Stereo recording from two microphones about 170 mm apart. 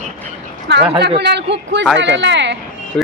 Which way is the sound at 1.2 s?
85° right.